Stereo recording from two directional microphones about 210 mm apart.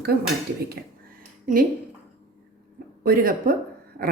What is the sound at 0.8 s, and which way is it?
Speech, 50° right (ahead or behind).